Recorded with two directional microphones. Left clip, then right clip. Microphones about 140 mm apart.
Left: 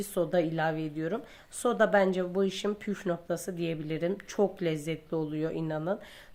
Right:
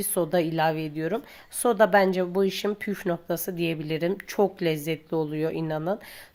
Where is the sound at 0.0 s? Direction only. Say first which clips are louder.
Right 3 dB; 25° right (ahead or behind).